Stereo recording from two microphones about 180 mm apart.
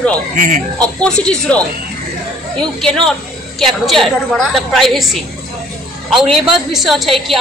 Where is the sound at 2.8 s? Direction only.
Centre (ahead or behind).